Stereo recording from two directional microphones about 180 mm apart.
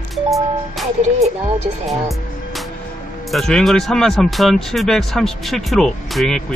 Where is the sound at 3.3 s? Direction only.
Centre (ahead or behind).